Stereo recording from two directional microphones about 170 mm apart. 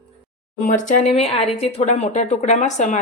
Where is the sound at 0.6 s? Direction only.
50° left (ahead or behind).